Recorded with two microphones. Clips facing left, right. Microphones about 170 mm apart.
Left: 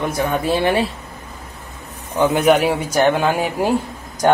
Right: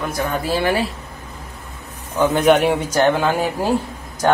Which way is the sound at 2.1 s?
5° left (ahead or behind).